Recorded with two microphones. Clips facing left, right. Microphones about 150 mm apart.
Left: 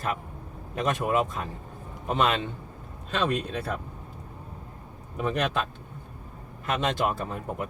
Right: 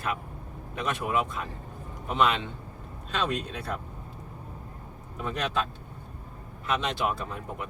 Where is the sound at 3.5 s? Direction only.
55° left (ahead or behind).